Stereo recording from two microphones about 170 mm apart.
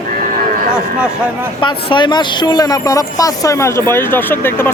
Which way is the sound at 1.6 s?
25° left (ahead or behind).